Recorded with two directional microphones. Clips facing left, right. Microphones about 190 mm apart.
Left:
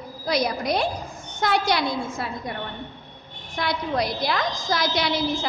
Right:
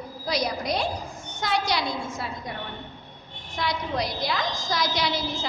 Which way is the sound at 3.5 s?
55° left (ahead or behind).